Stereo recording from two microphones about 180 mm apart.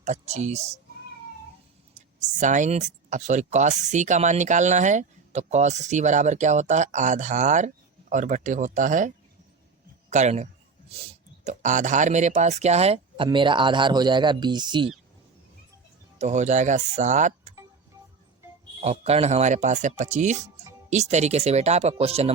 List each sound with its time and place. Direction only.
0.0 s speech: 40° right (ahead or behind)
2.2 s speech: 45° right (ahead or behind)
10.1 s a sound: 40° right (ahead or behind)
11.4 s speech: 45° right (ahead or behind); by 14.9 s 25° right (ahead or behind)
16.1 s speech: 40° right (ahead or behind)
18.8 s speech: 35° right (ahead or behind)